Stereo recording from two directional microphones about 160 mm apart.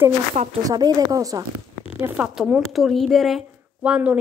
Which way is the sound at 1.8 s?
35° left (ahead or behind).